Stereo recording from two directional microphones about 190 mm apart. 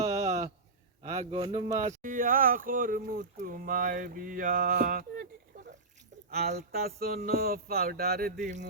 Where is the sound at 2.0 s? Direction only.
45° right (ahead or behind).